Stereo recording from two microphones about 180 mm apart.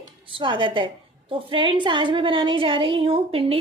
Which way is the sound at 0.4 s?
25° right (ahead or behind).